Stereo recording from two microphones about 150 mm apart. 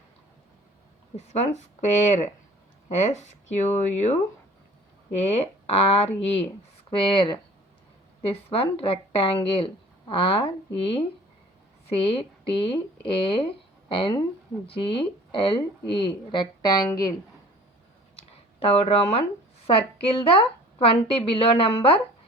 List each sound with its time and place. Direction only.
1.1 s speech: 45° left (ahead or behind)
5.2 s speech: 45° left (ahead or behind); by 17.2 s 25° left (ahead or behind)
18.6 s speech: 40° left (ahead or behind)